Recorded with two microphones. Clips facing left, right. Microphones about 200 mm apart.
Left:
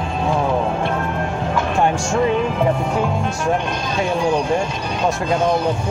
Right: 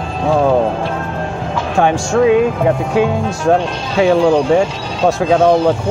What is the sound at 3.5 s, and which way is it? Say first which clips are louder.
Speech: right 6 dB; 90° right.